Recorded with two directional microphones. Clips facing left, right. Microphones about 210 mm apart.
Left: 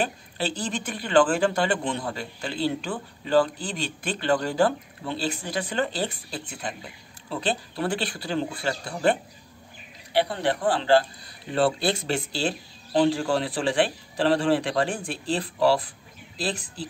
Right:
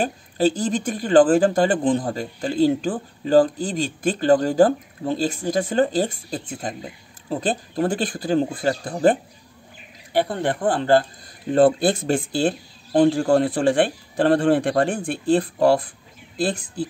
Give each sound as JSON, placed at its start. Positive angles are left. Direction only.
{"t": 0.0, "sound": "speech", "side_deg": -45}